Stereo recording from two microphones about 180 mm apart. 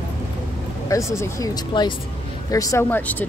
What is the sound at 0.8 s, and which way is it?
Speech, 15° left (ahead or behind).